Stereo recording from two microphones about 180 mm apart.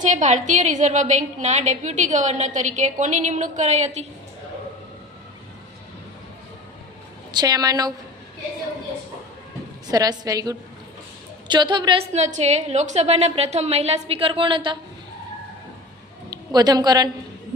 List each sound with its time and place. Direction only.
0.0 s a woman's voice: 45° right (ahead or behind)
7.3 s a woman's voice: 20° right (ahead or behind)
9.8 s a woman's voice: 20° right (ahead or behind)
12.1 s a woman's voice: 40° right (ahead or behind)
16.3 s a woman's voice: 20° right (ahead or behind)